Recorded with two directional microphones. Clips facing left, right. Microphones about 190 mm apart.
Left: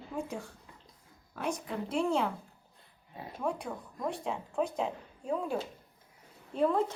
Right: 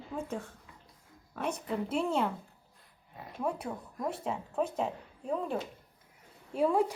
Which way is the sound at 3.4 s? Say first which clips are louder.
Right 1 dB; 5° right (ahead or behind).